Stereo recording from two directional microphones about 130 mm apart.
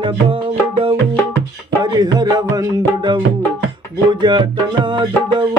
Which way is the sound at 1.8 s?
30° right (ahead or behind).